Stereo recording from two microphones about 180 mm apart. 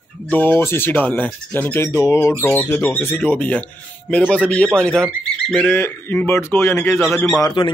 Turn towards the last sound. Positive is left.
turn(degrees=25)  # may be behind; listen again after turning